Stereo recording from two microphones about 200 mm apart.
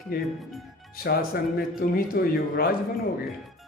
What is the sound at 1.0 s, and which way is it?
A man's voice, 50° left (ahead or behind).